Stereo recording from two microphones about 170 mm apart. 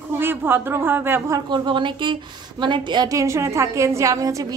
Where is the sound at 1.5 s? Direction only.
30° right (ahead or behind).